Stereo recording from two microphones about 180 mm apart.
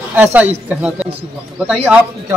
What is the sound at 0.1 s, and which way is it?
Speech, 10° right (ahead or behind).